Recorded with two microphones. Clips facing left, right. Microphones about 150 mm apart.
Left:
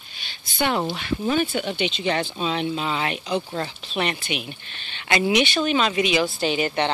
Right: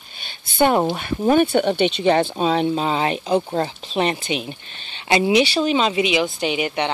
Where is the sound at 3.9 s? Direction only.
30° right (ahead or behind).